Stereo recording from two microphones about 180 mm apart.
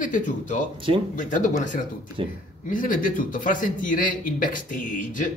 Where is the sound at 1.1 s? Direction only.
45° left (ahead or behind).